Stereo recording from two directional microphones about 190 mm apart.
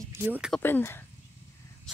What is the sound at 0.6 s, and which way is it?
Speech, 10° left (ahead or behind).